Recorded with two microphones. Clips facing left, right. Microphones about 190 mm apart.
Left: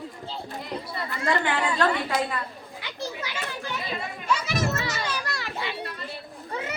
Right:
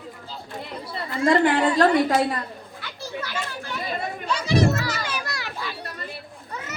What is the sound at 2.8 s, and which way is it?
Children playing, 15° left (ahead or behind).